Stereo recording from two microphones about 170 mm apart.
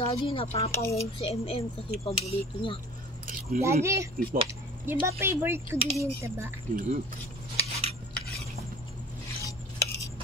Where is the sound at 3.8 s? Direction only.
15° right (ahead or behind).